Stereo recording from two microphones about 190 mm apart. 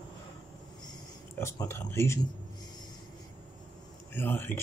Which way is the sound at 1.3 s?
15° left (ahead or behind).